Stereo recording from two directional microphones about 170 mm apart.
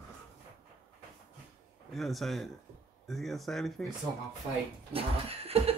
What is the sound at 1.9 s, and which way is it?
Speech, centre (ahead or behind).